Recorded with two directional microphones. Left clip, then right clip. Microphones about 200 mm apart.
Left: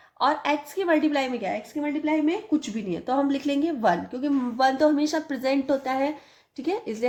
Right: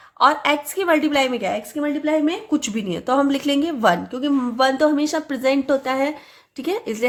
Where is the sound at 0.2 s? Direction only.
25° right (ahead or behind).